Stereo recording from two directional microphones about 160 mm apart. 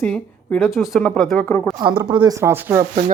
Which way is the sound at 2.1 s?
25° right (ahead or behind).